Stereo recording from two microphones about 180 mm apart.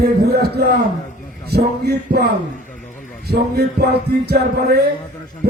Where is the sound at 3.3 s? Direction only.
60° right (ahead or behind).